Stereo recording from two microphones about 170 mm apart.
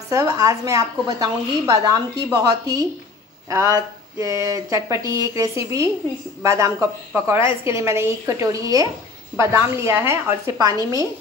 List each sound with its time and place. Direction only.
0.1 s a woman's voice: 20° right (ahead or behind)